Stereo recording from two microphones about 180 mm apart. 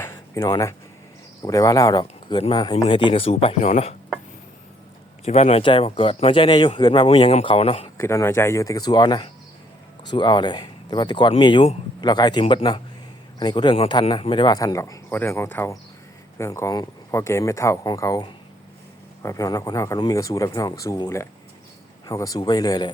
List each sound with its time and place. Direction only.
0.0 s a sound: 15° left (ahead or behind)
1.4 s a man's voice: 20° left (ahead or behind); by 3.9 s 35° left (ahead or behind)
5.2 s a man's voice: 35° left (ahead or behind)
7.9 s speech: 15° left (ahead or behind)